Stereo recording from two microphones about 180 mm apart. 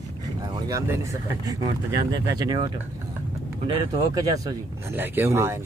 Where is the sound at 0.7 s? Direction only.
15° right (ahead or behind).